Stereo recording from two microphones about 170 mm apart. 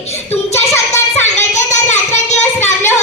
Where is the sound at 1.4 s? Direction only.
45° left (ahead or behind).